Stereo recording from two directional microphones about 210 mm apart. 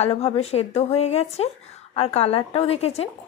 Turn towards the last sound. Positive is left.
turn(degrees=30)  # may be behind; listen again after turning